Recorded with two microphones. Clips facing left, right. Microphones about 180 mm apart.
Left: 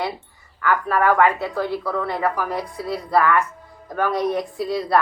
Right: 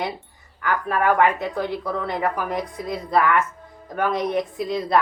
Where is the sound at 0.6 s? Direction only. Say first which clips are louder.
Left 2 dB; 15° right (ahead or behind).